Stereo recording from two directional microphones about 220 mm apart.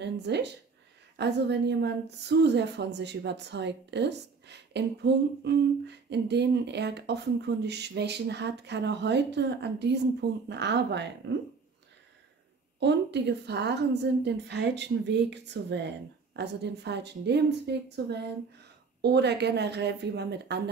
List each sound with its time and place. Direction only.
0.0 s a sound: 50° right (ahead or behind)
1.1 s a woman's voice: 50° right (ahead or behind)
12.8 s a woman's voice: 50° right (ahead or behind)